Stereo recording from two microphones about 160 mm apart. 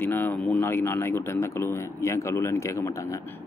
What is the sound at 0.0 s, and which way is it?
Speech, 10° left (ahead or behind).